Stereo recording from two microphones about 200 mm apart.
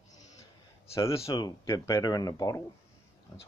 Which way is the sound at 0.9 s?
15° left (ahead or behind).